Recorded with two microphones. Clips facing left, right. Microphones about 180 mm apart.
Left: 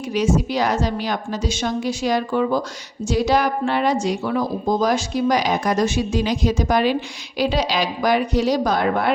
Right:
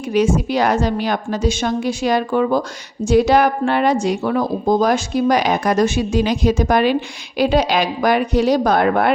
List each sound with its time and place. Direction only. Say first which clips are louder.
0.1 s speech: right 3 dB; 55° right (ahead or behind)